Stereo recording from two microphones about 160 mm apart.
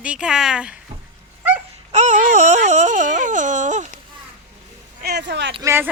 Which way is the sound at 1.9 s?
50° right (ahead or behind).